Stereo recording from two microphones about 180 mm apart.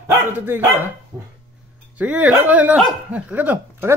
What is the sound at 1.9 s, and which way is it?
Speech, 5° right (ahead or behind).